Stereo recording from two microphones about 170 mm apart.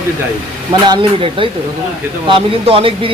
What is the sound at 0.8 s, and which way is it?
Speech, 25° right (ahead or behind).